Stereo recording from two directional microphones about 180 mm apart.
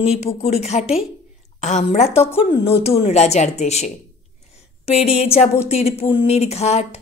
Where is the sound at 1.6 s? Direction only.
40° left (ahead or behind).